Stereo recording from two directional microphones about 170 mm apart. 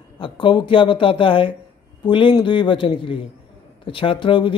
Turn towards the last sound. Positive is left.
turn(degrees=30)  # may be behind; listen again after turning